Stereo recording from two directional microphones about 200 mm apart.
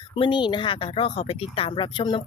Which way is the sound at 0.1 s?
25° left (ahead or behind).